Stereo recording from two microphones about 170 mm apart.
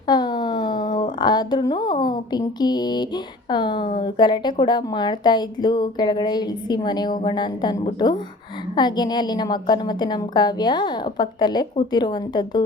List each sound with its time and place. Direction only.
0.1 s a woman's voice: 25° left (ahead or behind)